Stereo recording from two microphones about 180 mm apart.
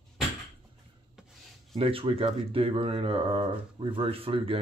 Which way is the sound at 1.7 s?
30° right (ahead or behind).